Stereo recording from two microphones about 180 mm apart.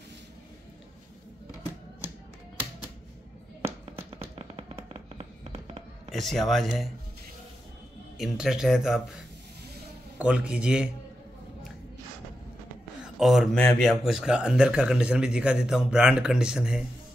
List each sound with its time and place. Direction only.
4.4 s fireworks: 35° right (ahead or behind)
6.1 s speech: centre (ahead or behind)
8.2 s speech: 5° right (ahead or behind)
10.1 s a man's voice: 5° right (ahead or behind)
13.0 s speech: centre (ahead or behind)